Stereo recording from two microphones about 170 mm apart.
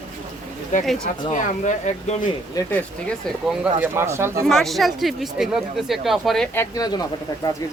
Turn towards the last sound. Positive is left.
turn(degrees=20)  # may be behind; listen again after turning